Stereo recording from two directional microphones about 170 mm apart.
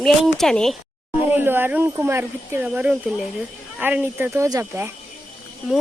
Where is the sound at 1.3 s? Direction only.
10° right (ahead or behind).